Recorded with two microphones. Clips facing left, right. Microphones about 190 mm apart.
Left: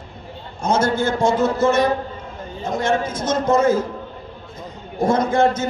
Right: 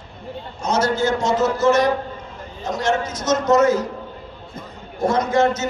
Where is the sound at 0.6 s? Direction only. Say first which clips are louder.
Left 1 dB; 55° left (ahead or behind).